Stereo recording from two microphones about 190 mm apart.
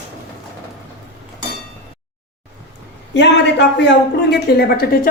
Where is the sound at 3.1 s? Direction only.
65° left (ahead or behind).